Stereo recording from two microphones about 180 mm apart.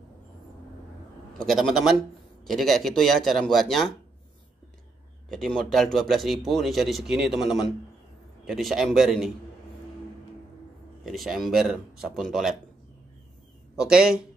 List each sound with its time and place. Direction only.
1.4 s speech: centre (ahead or behind)
5.3 s speech: 5° left (ahead or behind)
11.1 s speech: centre (ahead or behind)
13.7 s speech: 5° right (ahead or behind)